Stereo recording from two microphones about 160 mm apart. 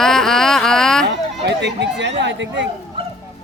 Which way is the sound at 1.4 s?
90° right.